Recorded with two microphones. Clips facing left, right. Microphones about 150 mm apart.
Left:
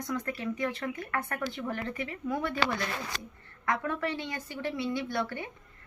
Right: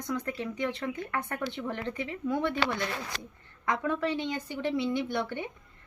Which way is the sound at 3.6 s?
20° right (ahead or behind).